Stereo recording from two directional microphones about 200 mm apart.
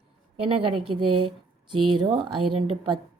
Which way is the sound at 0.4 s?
25° right (ahead or behind).